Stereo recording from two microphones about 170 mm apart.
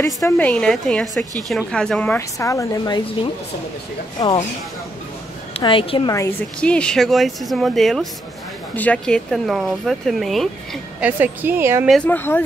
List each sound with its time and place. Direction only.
0.4 s a woman's voice: 5° left (ahead or behind); by 3.3 s 25° left (ahead or behind)
5.5 s a woman's voice: 30° left (ahead or behind)
6.6 s speech: 5° left (ahead or behind)
11.1 s a woman's voice: 10° right (ahead or behind)
11.9 s a woman's voice: 10° left (ahead or behind)